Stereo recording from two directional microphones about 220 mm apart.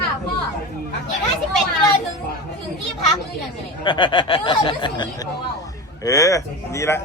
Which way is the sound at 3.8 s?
20° left (ahead or behind).